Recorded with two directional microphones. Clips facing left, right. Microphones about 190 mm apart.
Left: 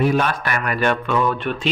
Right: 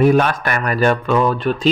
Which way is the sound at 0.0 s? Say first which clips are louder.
Right 5 dB; 45° right (ahead or behind).